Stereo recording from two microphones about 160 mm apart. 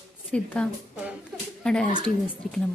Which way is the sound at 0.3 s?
10° left (ahead or behind).